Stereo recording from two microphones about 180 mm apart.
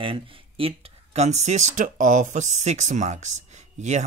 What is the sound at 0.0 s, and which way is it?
Speech, 30° right (ahead or behind).